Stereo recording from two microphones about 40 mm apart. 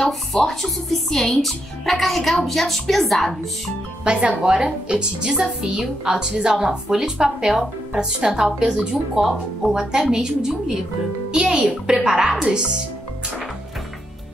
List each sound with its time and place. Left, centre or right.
0.3 s a woman's voice: centre
4.0 s speech: right
4.8 s a woman's voice: right
9.3 s a woman's voice: centre
10.1 s a woman's voice: centre
11.3 s speech: right